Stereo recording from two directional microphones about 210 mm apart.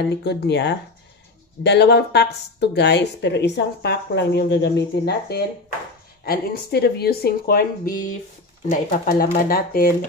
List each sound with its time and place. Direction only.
0.0 s speech: 50° left (ahead or behind)